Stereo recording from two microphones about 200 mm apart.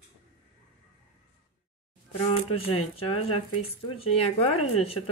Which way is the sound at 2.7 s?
30° left (ahead or behind).